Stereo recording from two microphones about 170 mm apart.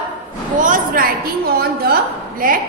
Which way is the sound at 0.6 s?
55° right (ahead or behind).